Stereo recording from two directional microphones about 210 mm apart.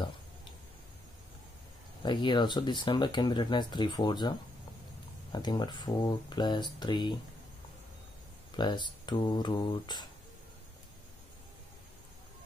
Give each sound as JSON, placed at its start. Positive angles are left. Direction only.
{"t": 2.0, "sound": "speech", "side_deg": 20}
{"t": 8.5, "sound": "speech", "side_deg": 20}